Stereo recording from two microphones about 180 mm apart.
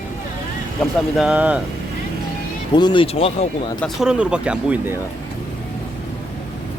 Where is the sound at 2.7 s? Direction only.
25° left (ahead or behind).